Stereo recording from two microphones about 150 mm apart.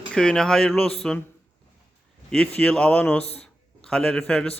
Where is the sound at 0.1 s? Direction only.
5° left (ahead or behind).